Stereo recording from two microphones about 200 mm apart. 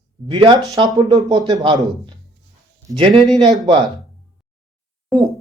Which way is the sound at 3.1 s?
Centre (ahead or behind).